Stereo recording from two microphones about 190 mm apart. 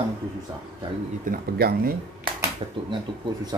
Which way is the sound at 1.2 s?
55° right (ahead or behind).